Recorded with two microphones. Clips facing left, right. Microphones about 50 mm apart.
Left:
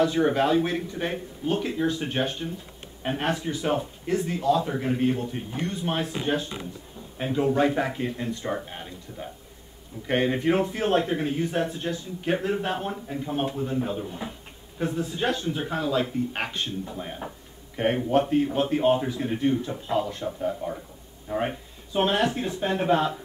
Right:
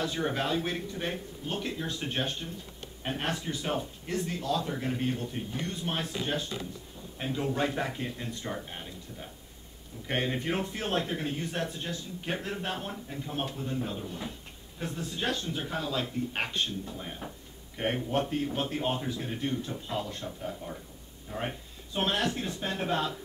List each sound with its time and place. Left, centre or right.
0.0 s a man's voice: centre
16.8 s a man's voice: centre